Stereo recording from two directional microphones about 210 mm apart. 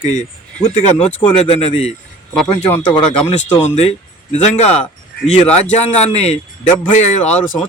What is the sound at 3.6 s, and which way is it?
A man's voice, 30° left (ahead or behind).